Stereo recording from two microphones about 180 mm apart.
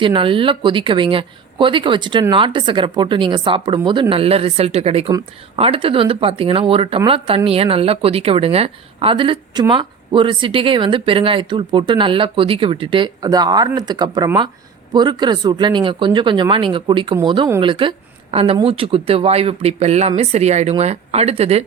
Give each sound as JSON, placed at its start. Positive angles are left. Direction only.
{"t": 0.0, "sound": "speech", "side_deg": -30}